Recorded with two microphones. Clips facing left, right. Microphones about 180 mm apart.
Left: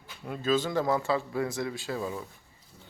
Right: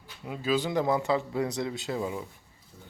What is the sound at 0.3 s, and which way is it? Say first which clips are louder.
Speech: left 1 dB; 10° right (ahead or behind).